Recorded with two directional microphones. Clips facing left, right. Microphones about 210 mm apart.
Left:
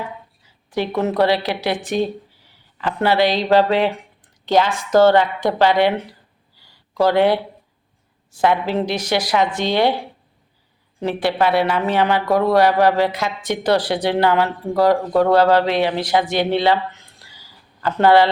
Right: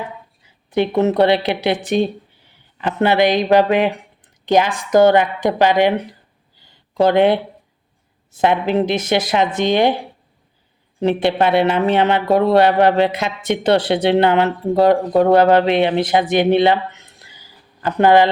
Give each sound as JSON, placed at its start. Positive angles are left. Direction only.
{"t": 0.7, "sound": "a woman's voice", "side_deg": -20}
{"t": 6.6, "sound": "a sound", "side_deg": -20}
{"t": 8.4, "sound": "speech", "side_deg": -20}
{"t": 11.0, "sound": "speech", "side_deg": -20}